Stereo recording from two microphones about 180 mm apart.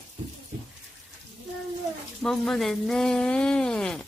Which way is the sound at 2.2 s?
Centre (ahead or behind).